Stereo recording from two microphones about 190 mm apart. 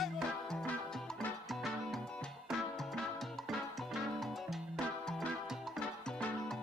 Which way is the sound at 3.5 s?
Centre (ahead or behind).